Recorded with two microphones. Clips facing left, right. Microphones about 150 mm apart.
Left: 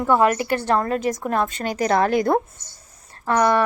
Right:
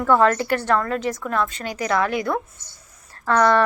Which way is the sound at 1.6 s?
45° left (ahead or behind).